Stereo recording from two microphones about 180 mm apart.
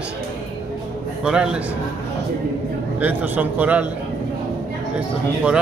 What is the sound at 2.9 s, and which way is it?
Speech, 10° right (ahead or behind).